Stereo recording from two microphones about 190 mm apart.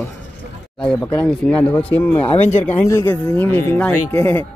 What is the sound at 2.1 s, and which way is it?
Speech, 30° left (ahead or behind).